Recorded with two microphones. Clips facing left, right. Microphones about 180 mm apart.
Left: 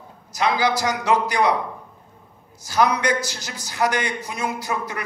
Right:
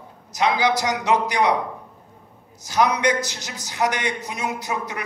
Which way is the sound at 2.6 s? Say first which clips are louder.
Even; 20° right (ahead or behind).